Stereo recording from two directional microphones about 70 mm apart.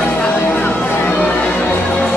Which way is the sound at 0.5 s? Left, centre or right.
Left.